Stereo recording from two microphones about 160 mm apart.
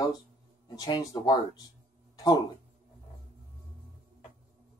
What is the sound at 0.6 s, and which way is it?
Speech, 25° left (ahead or behind).